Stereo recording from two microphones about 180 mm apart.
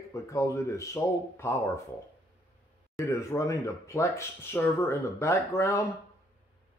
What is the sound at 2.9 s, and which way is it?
Speech, 15° left (ahead or behind).